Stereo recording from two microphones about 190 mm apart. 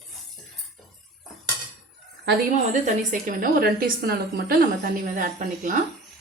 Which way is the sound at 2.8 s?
40° right (ahead or behind).